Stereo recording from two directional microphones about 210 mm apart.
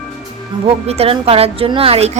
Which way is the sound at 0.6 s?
30° right (ahead or behind).